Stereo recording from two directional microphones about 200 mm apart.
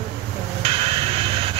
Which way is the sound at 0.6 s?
30° right (ahead or behind).